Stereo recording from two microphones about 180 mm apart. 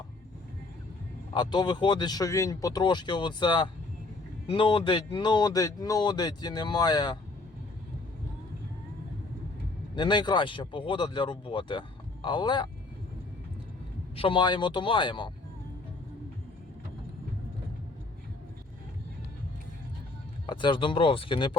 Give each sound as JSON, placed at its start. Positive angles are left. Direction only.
{"t": 1.3, "sound": "speech", "side_deg": 25}
{"t": 9.9, "sound": "speech", "side_deg": 25}
{"t": 14.2, "sound": "speech", "side_deg": 25}
{"t": 20.5, "sound": "speech", "side_deg": 25}